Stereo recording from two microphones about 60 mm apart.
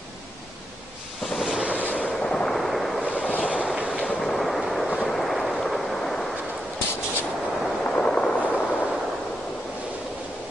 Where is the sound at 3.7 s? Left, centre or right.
Centre.